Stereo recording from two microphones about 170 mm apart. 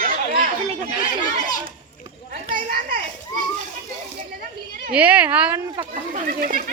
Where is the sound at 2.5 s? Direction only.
50° right (ahead or behind).